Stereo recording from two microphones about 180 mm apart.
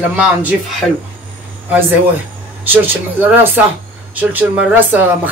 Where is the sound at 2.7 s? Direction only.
10° right (ahead or behind).